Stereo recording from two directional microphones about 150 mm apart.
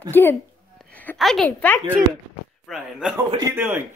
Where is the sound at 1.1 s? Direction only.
Centre (ahead or behind).